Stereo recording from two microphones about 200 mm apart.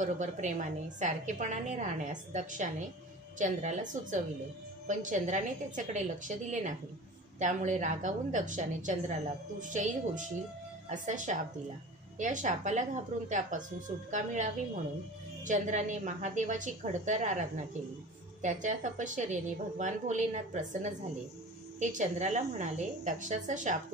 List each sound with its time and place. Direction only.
0.0 s a woman's voice: 40° right (ahead or behind)